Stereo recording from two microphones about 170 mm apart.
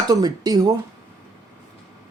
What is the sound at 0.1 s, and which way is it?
Speech, 25° right (ahead or behind).